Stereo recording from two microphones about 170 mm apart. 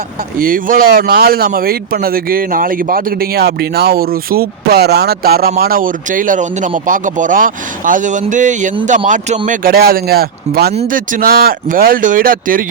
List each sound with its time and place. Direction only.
0.3 s speech: 55° right (ahead or behind)
9.5 s speech: 60° right (ahead or behind)
10.8 s speech: 55° right (ahead or behind)